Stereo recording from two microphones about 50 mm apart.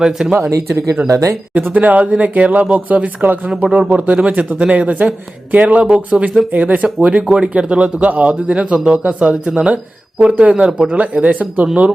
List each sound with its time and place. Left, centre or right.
0.0 s speech: centre
0.5 s speech: right
1.7 s a man's voice: right